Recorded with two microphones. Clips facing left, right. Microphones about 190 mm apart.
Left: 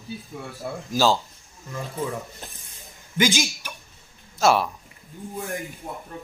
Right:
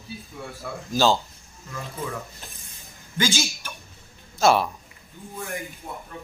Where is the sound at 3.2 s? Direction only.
15° left (ahead or behind).